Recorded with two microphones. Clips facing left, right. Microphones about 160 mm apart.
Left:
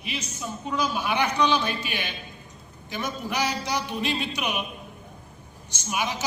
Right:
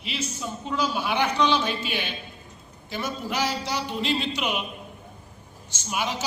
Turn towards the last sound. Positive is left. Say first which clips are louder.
# even
turn(degrees=15)  # may be behind; listen again after turning